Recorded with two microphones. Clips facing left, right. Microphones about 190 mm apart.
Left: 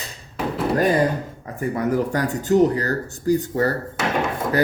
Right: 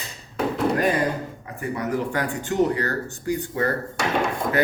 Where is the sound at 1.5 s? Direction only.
40° left (ahead or behind).